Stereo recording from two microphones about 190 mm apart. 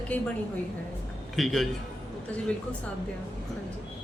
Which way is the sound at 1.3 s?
Centre (ahead or behind).